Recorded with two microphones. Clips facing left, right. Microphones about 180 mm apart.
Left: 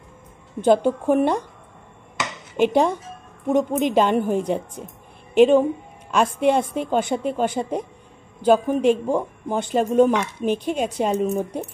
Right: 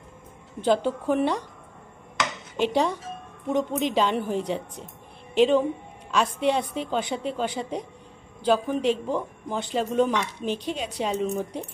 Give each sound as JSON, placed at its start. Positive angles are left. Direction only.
{"t": 0.7, "sound": "speech", "side_deg": 50}
{"t": 2.6, "sound": "speech", "side_deg": 50}